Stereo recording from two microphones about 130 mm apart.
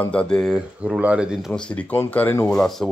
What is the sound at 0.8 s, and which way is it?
Speech, 10° right (ahead or behind).